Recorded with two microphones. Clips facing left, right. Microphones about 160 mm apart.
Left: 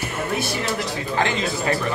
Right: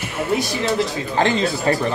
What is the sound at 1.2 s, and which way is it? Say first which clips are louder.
Speech: right 5 dB; 35° right (ahead or behind).